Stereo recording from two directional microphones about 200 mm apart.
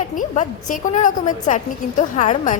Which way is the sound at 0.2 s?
40° left (ahead or behind).